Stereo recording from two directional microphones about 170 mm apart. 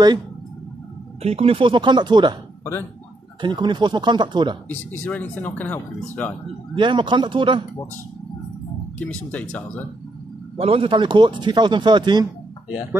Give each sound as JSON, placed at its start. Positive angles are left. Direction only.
{"t": 1.2, "sound": "speech", "side_deg": -35}
{"t": 3.3, "sound": "speech", "side_deg": -25}
{"t": 4.6, "sound": "speech", "side_deg": 10}
{"t": 6.7, "sound": "speech", "side_deg": -30}
{"t": 9.0, "sound": "speech", "side_deg": 10}
{"t": 10.6, "sound": "speech", "side_deg": -35}